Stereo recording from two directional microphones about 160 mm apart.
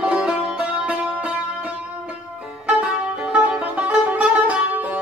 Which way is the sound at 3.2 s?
5° right (ahead or behind).